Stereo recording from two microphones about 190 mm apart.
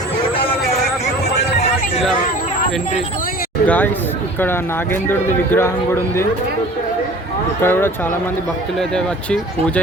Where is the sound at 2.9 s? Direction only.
45° left (ahead or behind).